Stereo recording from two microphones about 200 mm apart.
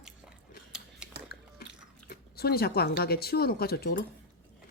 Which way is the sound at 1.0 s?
5° right (ahead or behind).